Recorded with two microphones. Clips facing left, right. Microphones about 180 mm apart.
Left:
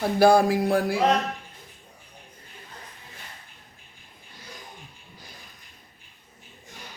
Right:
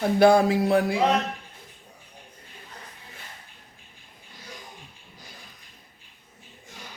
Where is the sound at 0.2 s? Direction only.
20° right (ahead or behind).